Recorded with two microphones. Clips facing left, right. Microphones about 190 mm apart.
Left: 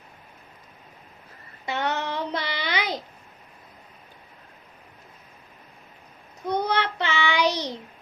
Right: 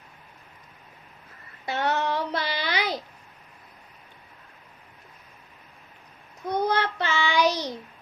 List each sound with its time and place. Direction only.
1.6 s child singing: 20° left (ahead or behind)
6.7 s child singing: 20° left (ahead or behind)